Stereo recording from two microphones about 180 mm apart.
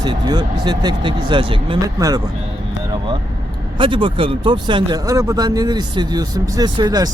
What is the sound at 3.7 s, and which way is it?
Speech, 25° right (ahead or behind).